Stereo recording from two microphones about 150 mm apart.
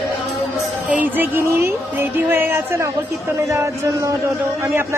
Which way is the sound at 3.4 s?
20° right (ahead or behind).